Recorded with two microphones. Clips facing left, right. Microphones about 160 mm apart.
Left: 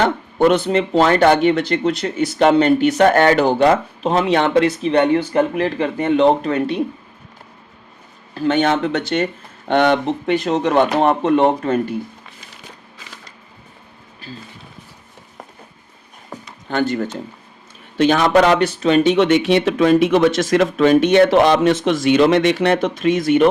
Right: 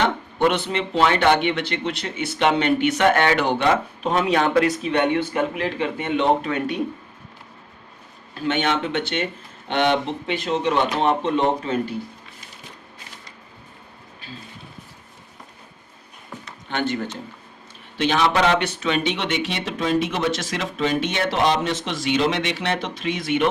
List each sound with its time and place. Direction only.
0.0 s speech: 40° left (ahead or behind)
8.4 s speech: 40° left (ahead or behind); by 11.9 s 55° left (ahead or behind)
16.3 s a sound: 40° left (ahead or behind)
16.6 s speech: 40° left (ahead or behind)